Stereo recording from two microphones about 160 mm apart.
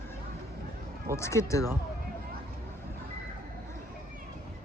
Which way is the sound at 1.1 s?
20° left (ahead or behind).